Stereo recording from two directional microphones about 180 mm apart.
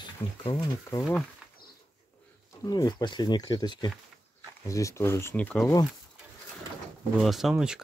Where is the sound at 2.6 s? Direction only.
20° left (ahead or behind).